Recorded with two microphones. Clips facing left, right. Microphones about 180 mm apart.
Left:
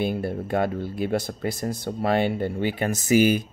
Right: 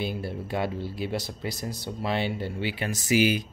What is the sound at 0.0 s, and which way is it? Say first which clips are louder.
Speech: left 6 dB; 50° left (ahead or behind).